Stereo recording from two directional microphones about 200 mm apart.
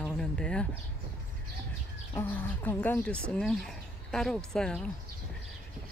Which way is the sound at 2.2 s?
10° left (ahead or behind).